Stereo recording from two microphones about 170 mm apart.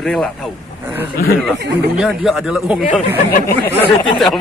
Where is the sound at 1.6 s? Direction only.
85° right.